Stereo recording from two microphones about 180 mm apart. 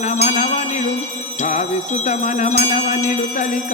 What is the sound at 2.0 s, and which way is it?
Jingle bell, 40° left (ahead or behind).